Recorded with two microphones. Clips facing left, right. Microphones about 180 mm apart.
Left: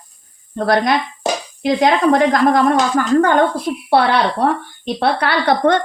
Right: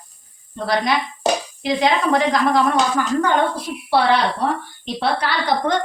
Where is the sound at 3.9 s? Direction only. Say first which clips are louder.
Left 2 dB; 60° left (ahead or behind).